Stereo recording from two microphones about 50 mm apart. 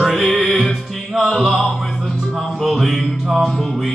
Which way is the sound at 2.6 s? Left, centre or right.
Centre.